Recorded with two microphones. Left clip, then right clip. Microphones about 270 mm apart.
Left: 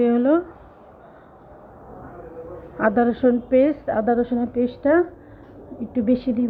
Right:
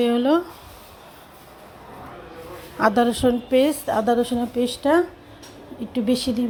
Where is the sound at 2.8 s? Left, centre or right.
Right.